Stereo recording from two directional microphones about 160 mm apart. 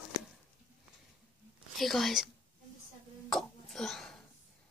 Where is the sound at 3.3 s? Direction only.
Centre (ahead or behind).